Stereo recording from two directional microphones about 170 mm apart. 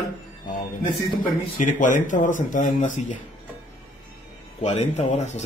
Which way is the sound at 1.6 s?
50° left (ahead or behind).